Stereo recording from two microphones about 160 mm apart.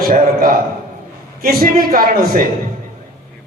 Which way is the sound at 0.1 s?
60° right (ahead or behind).